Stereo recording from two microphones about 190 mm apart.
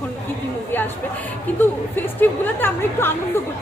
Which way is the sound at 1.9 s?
10° left (ahead or behind).